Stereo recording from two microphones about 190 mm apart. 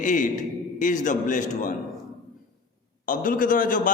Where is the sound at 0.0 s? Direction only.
40° left (ahead or behind).